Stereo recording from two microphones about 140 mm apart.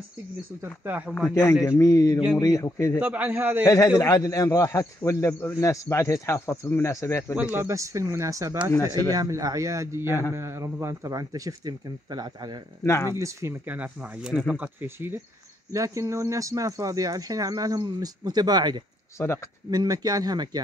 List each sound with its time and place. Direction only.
0.6 s speech: 10° right (ahead or behind)
1.1 s a man's voice: 10° left (ahead or behind)
3.0 s speech: 10° right (ahead or behind)
3.6 s a man's voice: 25° left (ahead or behind)
7.3 s speech: 15° right (ahead or behind); by 12.5 s 30° right (ahead or behind)
12.8 s a man's voice: 20° left (ahead or behind)
13.2 s speech: 20° right (ahead or behind)
19.1 s a man's voice: 20° left (ahead or behind)
19.7 s speech: 25° right (ahead or behind)